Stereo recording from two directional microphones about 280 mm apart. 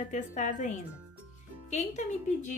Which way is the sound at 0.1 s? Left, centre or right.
Left.